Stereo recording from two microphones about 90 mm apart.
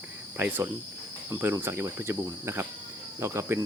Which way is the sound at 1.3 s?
25° right (ahead or behind).